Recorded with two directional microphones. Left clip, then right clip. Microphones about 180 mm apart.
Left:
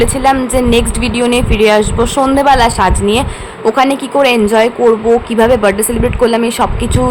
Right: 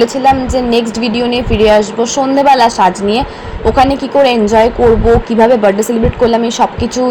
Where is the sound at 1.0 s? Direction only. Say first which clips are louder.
Right 1 dB; 65° left (ahead or behind).